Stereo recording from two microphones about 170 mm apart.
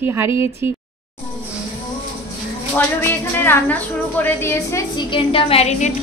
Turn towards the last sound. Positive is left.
turn(degrees=40)  # may be behind; listen again after turning